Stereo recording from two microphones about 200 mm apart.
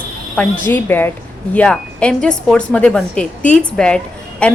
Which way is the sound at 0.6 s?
10° left (ahead or behind).